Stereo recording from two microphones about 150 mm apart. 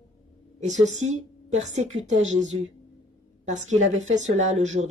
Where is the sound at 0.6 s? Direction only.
50° right (ahead or behind).